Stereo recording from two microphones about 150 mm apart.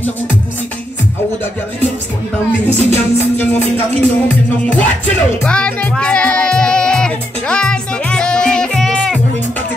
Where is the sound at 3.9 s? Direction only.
10° left (ahead or behind).